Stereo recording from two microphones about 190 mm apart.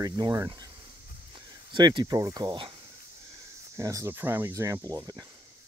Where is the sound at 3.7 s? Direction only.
15° right (ahead or behind).